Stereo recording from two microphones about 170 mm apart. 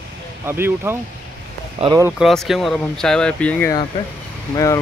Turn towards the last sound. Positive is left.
turn(degrees=20)  # may be behind; listen again after turning